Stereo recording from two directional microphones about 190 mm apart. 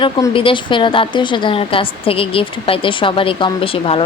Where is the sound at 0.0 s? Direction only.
25° left (ahead or behind).